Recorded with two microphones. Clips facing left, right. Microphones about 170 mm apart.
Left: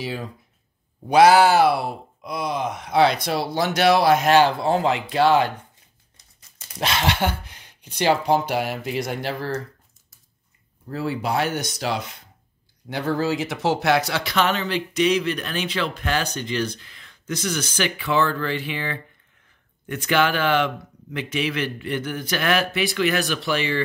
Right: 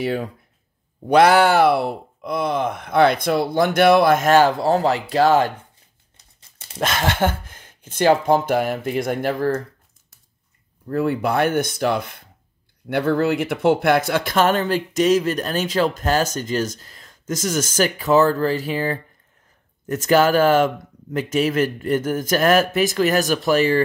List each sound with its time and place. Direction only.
0.0 s speech: 60° right (ahead or behind); by 5.5 s 40° right (ahead or behind)
6.8 s speech: 50° right (ahead or behind)
10.9 s speech: 55° right (ahead or behind)